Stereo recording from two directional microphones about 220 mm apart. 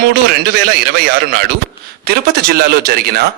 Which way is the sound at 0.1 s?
40° right (ahead or behind).